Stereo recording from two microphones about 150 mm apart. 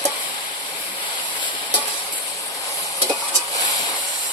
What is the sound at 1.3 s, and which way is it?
Stir, 30° left (ahead or behind).